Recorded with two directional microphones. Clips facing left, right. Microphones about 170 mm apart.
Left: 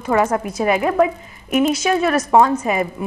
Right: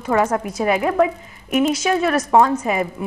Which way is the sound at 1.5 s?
50° left (ahead or behind).